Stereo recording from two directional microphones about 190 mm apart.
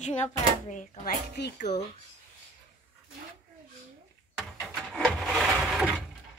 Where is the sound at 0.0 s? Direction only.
40° left (ahead or behind).